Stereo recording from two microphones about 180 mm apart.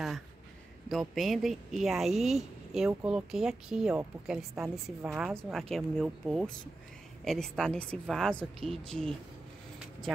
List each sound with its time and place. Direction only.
0.8 s speech: centre (ahead or behind)
8.5 s a woman's voice: 30° right (ahead or behind)